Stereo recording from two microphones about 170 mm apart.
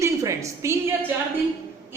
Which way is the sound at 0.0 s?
15° right (ahead or behind).